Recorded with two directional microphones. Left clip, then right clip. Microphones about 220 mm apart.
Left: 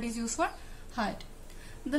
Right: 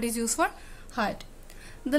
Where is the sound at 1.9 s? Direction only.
45° right (ahead or behind).